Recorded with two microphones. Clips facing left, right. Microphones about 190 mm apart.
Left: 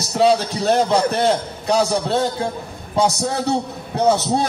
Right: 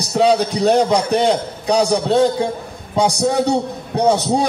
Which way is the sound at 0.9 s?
15° right (ahead or behind).